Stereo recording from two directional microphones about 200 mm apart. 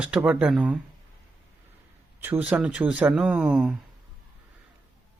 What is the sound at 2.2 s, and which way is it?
Speech, 10° right (ahead or behind).